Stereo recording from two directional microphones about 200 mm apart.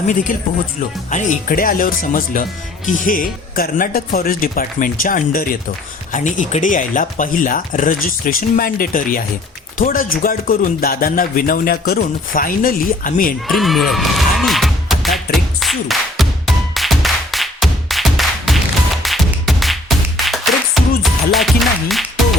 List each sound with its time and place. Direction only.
1.1 s speech: 40° left (ahead or behind)
13.5 s music: centre (ahead or behind)